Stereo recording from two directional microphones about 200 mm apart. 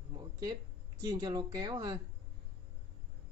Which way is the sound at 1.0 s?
20° right (ahead or behind).